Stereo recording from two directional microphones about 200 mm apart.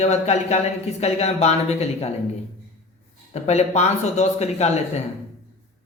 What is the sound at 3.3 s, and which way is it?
Speech, 35° left (ahead or behind).